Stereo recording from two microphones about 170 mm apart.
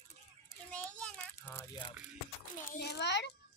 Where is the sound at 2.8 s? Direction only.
80° left.